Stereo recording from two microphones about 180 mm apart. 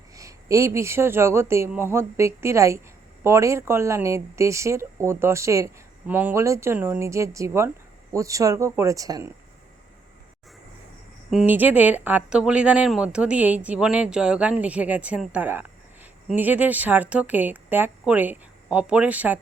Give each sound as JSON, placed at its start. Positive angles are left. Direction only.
{"t": 0.1, "sound": "speech", "side_deg": -15}
{"t": 11.3, "sound": "speech", "side_deg": -5}